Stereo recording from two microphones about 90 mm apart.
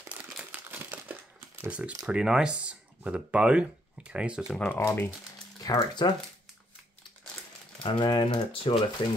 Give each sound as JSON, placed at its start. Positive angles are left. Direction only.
{"t": 0.4, "sound": "a sound", "side_deg": -20}
{"t": 1.6, "sound": "speech", "side_deg": -15}
{"t": 4.7, "sound": "speech", "side_deg": 25}
{"t": 5.8, "sound": "speech", "side_deg": 55}
{"t": 7.8, "sound": "speech", "side_deg": 60}